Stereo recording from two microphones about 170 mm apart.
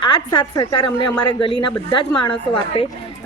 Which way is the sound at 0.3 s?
25° left (ahead or behind).